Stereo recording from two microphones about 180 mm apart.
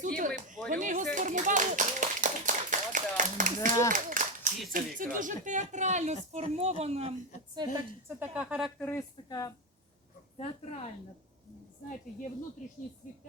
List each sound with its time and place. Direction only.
0.2 s speech: 45° right (ahead or behind)
0.7 s clapping: 45° right (ahead or behind)
4.7 s speech: 50° right (ahead or behind)
7.5 s a woman's voice: 25° right (ahead or behind)
8.2 s a woman's voice: 5° right (ahead or behind)
8.9 s speech: 15° left (ahead or behind)
10.3 s a woman's voice: 35° left (ahead or behind)